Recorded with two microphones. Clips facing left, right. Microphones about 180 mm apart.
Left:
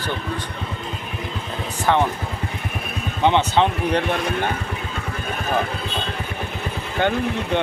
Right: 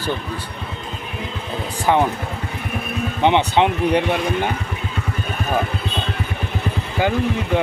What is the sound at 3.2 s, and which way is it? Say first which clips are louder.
Speech: right 1 dB; 15° right (ahead or behind).